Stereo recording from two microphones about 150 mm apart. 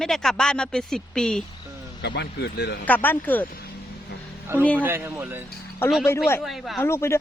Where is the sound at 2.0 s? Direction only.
90° left.